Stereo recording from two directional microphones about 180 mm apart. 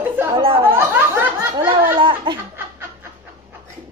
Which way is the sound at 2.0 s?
25° right (ahead or behind).